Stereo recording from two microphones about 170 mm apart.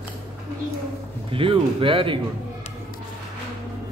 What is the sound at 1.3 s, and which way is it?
Speech, 30° right (ahead or behind).